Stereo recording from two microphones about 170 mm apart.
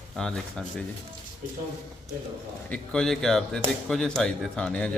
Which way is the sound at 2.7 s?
5° left (ahead or behind).